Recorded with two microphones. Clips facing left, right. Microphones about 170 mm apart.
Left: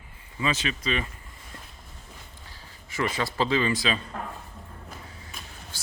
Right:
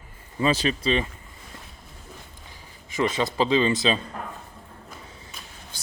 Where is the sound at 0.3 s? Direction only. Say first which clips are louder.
Right 6 dB; 35° right (ahead or behind).